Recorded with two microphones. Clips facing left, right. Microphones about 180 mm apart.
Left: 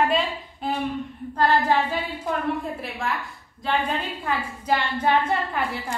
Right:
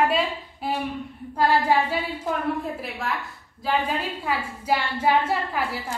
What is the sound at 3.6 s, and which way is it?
A woman's voice, 5° right (ahead or behind).